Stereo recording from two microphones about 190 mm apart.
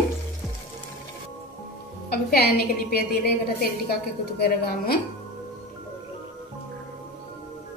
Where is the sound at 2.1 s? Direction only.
55° left (ahead or behind).